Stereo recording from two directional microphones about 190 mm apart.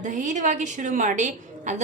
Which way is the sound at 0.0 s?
40° right (ahead or behind).